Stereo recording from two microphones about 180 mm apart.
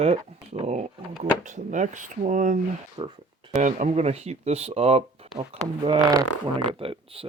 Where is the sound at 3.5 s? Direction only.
40° right (ahead or behind).